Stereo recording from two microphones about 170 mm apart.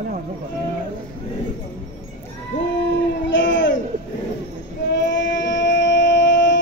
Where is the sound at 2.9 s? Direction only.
90° left.